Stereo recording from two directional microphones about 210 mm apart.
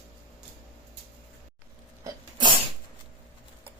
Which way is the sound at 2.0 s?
20° right (ahead or behind).